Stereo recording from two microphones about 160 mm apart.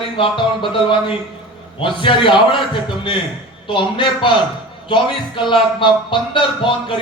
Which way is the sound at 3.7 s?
30° left (ahead or behind).